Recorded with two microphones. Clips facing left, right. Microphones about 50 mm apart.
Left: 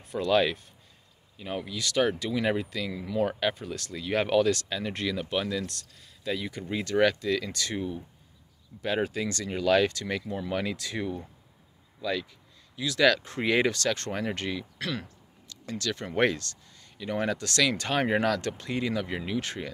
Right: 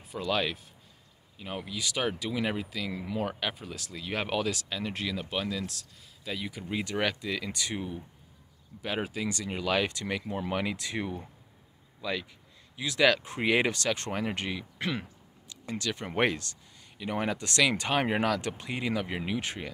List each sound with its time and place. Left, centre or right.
0.0 s speech: centre
2.9 s speech: centre
3.3 s speech: centre
10.2 s speech: right
10.5 s speech: centre